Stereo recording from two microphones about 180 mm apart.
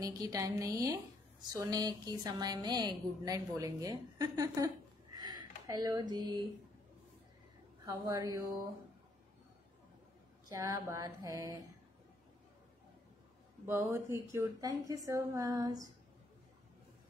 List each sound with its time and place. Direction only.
0.0 s a woman's voice: 20° right (ahead or behind)
7.8 s a woman's voice: 20° right (ahead or behind)
10.5 s a woman's voice: 20° right (ahead or behind)
13.7 s a woman's voice: 10° right (ahead or behind)